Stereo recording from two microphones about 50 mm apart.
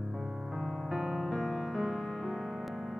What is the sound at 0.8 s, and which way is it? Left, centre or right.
Music, centre.